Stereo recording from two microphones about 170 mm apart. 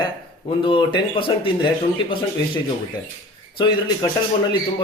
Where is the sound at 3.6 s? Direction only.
25° left (ahead or behind).